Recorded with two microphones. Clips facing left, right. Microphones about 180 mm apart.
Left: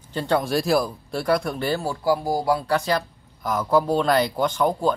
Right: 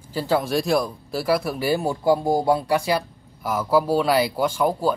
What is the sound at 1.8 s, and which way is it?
Speech, 20° right (ahead or behind).